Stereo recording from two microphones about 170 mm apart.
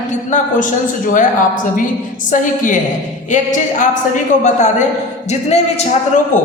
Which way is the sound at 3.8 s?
45° left (ahead or behind).